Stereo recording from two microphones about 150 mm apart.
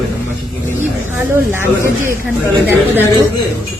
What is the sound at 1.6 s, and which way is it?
Speech, 15° right (ahead or behind).